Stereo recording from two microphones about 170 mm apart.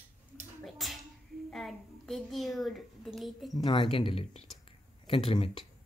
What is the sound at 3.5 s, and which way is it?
Speech, 25° left (ahead or behind).